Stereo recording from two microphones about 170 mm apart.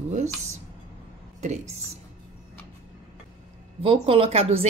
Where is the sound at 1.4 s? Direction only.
40° right (ahead or behind).